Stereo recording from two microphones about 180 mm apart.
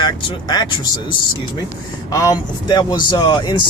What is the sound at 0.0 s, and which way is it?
Speech, 25° left (ahead or behind).